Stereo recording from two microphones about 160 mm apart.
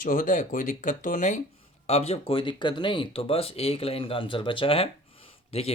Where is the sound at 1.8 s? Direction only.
40° left (ahead or behind).